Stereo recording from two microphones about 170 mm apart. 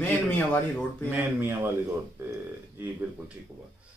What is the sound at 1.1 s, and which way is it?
Speech, 10° right (ahead or behind).